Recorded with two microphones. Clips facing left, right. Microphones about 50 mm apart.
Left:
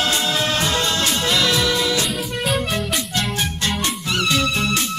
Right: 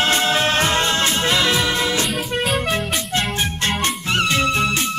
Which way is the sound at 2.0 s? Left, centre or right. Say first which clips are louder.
Right 1 dB; centre.